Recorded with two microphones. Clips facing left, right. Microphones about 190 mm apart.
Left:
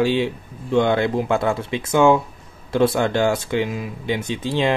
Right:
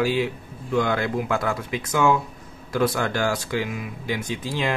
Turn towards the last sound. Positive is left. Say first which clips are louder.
# left 5 dB
turn(degrees=25)  # may be behind; listen again after turning